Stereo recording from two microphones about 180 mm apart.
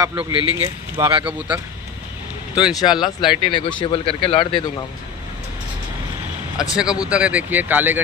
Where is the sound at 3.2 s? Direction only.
25° left (ahead or behind).